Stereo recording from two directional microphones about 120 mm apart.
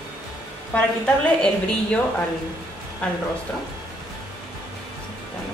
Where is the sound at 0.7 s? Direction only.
15° left (ahead or behind).